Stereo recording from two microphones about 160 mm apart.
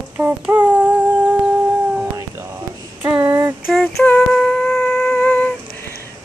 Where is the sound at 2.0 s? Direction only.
20° right (ahead or behind).